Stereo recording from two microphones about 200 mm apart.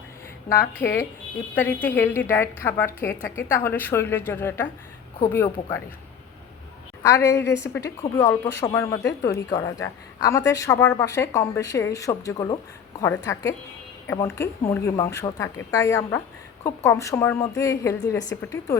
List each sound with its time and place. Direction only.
0.4 s a woman's voice: 15° left (ahead or behind)
7.0 s a woman's voice: 15° left (ahead or behind)